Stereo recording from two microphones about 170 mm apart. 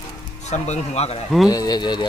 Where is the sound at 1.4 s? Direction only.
20° left (ahead or behind).